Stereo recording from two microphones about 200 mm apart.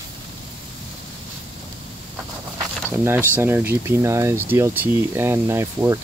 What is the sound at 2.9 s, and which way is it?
Speech, 10° right (ahead or behind).